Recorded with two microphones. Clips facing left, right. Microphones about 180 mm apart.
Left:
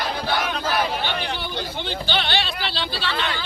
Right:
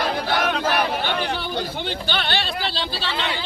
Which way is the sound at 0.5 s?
60° right (ahead or behind).